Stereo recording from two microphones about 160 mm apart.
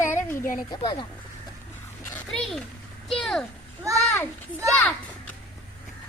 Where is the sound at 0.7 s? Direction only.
30° left (ahead or behind).